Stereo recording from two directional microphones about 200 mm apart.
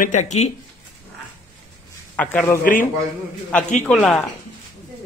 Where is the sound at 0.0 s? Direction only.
35° left (ahead or behind).